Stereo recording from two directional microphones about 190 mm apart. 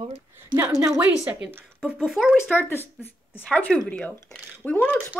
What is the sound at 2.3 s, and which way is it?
Speech, 10° left (ahead or behind).